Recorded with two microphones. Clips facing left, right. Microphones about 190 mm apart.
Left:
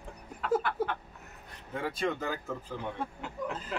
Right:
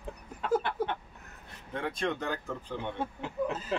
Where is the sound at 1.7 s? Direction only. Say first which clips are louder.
Even; 5° left (ahead or behind).